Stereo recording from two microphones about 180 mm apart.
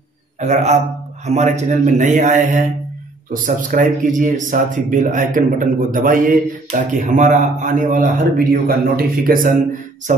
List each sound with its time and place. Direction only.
0.4 s a man's voice: 40° right (ahead or behind)